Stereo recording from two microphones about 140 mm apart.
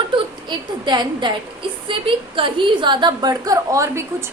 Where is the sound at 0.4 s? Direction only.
30° right (ahead or behind).